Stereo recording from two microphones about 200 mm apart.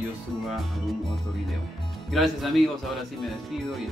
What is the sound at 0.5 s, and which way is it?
Speech, centre (ahead or behind).